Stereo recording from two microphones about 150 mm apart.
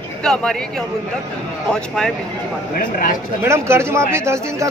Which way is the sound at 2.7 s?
70° left (ahead or behind).